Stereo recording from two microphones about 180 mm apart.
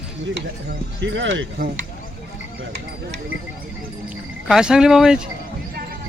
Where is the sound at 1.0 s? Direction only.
90° right.